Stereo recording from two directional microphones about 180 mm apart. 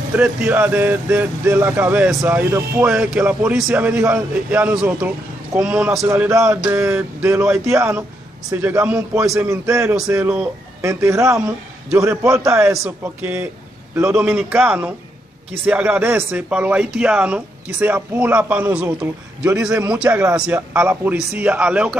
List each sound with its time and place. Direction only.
0.1 s speech: 5° right (ahead or behind)